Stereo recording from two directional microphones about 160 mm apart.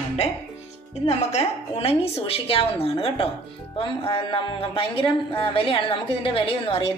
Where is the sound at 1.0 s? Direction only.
40° left (ahead or behind).